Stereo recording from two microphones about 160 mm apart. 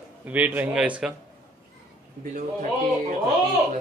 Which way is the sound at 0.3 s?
10° right (ahead or behind).